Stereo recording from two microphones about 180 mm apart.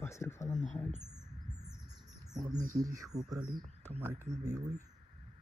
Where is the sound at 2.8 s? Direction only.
20° right (ahead or behind).